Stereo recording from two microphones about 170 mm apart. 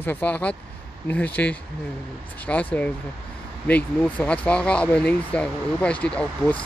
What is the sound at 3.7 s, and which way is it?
Speech, 10° left (ahead or behind).